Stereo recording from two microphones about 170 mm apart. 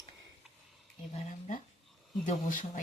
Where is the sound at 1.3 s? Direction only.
45° left (ahead or behind).